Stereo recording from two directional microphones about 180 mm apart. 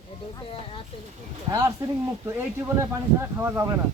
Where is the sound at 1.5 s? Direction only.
20° right (ahead or behind).